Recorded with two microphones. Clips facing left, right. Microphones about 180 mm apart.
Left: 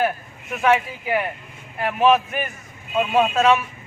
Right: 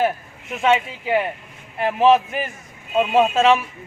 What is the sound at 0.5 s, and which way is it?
A man's voice, 25° right (ahead or behind).